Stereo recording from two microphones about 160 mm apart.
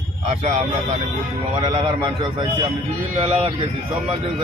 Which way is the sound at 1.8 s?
30° right (ahead or behind).